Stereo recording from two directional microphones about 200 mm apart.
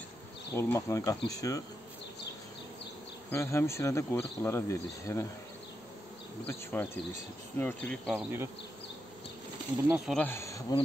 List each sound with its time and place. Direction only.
0.6 s speech: 15° left (ahead or behind)
3.3 s speech: 15° left (ahead or behind)
6.4 s speech: 10° left (ahead or behind)
8.1 s bee: 10° right (ahead or behind)
9.8 s speech: 5° right (ahead or behind)
10.2 s speech: 15° left (ahead or behind)